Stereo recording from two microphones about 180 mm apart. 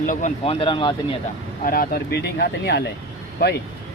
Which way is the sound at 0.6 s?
25° left (ahead or behind).